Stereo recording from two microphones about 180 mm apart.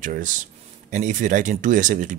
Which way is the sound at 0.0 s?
45° right (ahead or behind).